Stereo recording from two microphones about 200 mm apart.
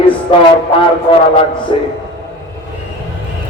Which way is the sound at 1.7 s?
25° left (ahead or behind).